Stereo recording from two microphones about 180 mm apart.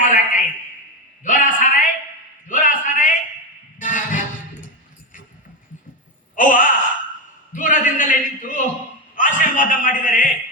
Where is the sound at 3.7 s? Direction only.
45° left (ahead or behind).